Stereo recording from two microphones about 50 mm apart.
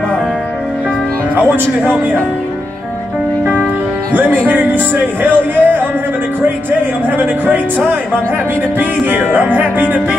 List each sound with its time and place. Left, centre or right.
4.5 s speech: right
7.2 s speech: right
8.7 s speech: right